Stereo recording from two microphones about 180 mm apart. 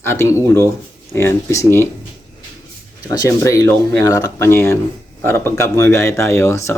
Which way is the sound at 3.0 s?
20° left (ahead or behind).